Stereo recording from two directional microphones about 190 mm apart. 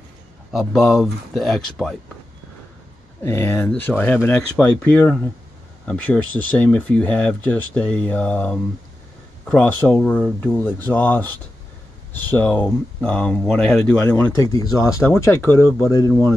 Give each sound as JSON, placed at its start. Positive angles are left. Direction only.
{"t": 0.5, "sound": "speech", "side_deg": 0}
{"t": 3.2, "sound": "speech", "side_deg": 10}